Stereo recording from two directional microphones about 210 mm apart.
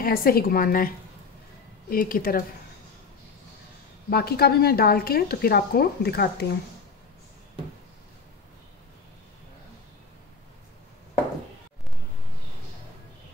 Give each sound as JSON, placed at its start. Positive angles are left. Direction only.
{"t": 0.0, "sound": "a woman's voice", "side_deg": 45}
{"t": 4.1, "sound": "a woman's voice", "side_deg": 50}